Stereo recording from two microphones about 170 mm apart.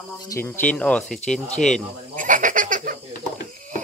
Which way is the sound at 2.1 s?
50° right (ahead or behind).